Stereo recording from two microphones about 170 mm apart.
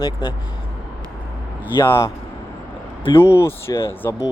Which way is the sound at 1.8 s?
15° left (ahead or behind).